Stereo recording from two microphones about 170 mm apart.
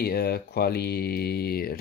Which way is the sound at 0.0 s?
65° left (ahead or behind).